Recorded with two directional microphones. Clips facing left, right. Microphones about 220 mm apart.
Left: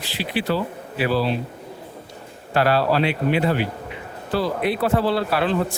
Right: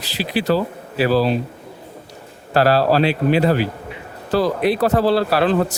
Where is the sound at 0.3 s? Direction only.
40° right (ahead or behind).